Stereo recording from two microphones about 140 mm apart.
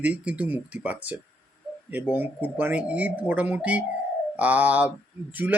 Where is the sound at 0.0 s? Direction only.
10° right (ahead or behind).